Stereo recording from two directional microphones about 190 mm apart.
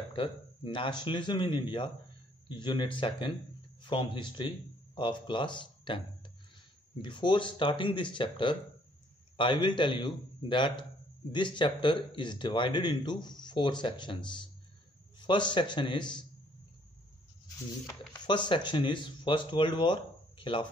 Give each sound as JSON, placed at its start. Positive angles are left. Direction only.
{"t": 0.1, "sound": "a man's voice", "side_deg": 25}
{"t": 17.8, "sound": "a man's voice", "side_deg": 20}